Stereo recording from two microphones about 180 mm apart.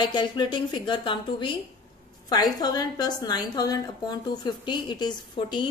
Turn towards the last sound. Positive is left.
turn(degrees=25)  # may be behind; listen again after turning